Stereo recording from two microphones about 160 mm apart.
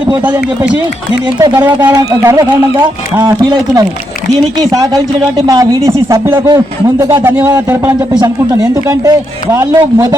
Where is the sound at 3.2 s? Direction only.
25° right (ahead or behind).